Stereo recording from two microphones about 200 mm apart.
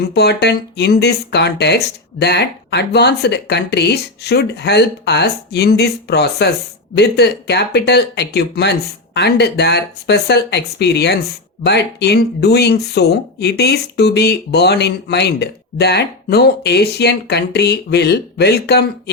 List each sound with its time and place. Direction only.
0.0 s speech: 55° left (ahead or behind)